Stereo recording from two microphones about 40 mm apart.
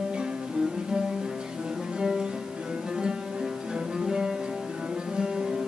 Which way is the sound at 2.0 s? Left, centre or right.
Centre.